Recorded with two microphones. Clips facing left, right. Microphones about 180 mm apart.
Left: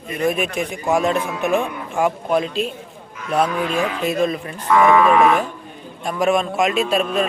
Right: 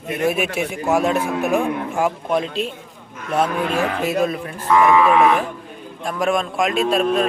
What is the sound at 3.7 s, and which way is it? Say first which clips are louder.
Speech: right 1 dB; 60° right (ahead or behind).